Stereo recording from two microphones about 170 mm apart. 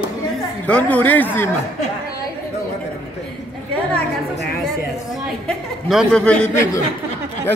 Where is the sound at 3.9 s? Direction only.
65° left (ahead or behind).